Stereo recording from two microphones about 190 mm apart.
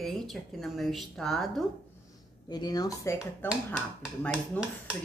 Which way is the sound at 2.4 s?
20° left (ahead or behind).